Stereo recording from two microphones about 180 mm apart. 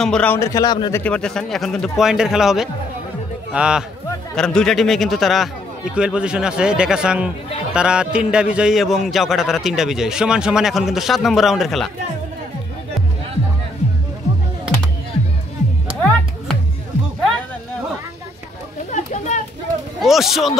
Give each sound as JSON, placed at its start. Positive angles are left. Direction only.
{"t": 0.0, "sound": "speech", "side_deg": 5}
{"t": 1.0, "sound": "a man's voice", "side_deg": 5}
{"t": 16.0, "sound": "music", "side_deg": 5}
{"t": 18.9, "sound": "chatter", "side_deg": 40}
{"t": 20.0, "sound": "a man's voice", "side_deg": 0}